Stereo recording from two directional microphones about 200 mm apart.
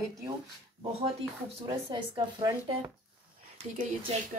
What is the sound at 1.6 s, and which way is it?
Speech, 20° right (ahead or behind).